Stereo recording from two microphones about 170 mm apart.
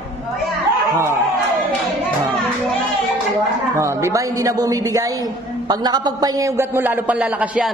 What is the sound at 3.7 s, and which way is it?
A man's voice, 15° right (ahead or behind).